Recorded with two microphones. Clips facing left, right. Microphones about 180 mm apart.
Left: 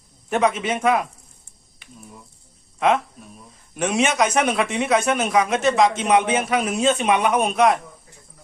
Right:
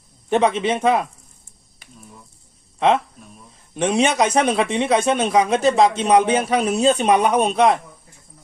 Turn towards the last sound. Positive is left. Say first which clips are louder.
# right 2 dB
turn(degrees=-30)  # may be behind; listen again after turning